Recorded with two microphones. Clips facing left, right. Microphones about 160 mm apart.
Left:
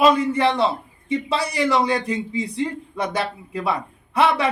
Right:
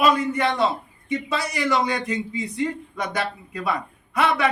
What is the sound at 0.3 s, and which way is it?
A man's voice, 30° left (ahead or behind).